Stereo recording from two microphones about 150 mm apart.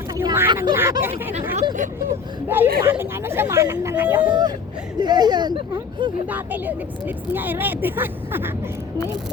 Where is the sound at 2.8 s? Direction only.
15° right (ahead or behind).